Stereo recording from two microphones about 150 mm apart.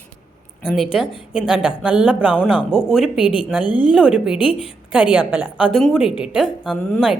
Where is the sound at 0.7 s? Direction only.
Centre (ahead or behind).